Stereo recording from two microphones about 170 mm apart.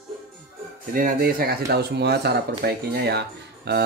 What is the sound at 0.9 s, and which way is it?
Speech, 60° right (ahead or behind).